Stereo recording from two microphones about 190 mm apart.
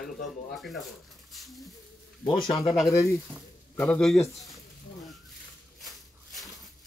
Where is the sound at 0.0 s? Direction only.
Centre (ahead or behind).